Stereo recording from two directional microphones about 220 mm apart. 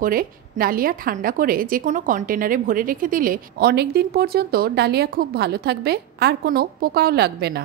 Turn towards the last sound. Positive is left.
turn(degrees=-45)  # may be behind; listen again after turning